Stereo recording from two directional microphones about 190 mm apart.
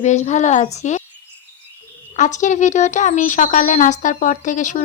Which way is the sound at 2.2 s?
40° left (ahead or behind).